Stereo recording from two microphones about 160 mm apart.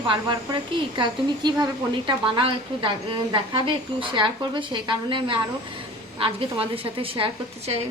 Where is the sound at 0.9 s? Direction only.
30° right (ahead or behind).